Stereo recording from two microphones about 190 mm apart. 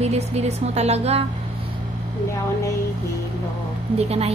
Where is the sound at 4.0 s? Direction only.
35° right (ahead or behind).